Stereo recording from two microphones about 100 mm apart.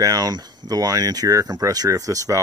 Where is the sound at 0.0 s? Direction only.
40° right (ahead or behind).